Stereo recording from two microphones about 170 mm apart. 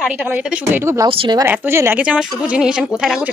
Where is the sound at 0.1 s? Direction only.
10° right (ahead or behind).